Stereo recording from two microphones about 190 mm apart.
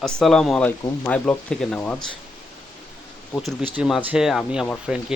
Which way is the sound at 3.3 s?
Centre (ahead or behind).